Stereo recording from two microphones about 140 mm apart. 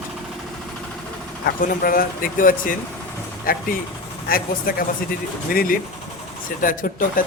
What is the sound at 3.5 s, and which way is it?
Speech, 90° left.